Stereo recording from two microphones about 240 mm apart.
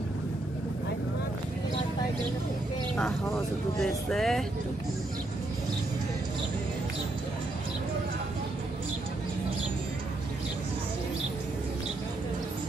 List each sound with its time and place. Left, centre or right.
4.1 s speech: centre